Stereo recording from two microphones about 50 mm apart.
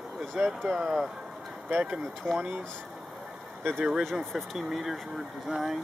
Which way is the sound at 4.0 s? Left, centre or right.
Centre.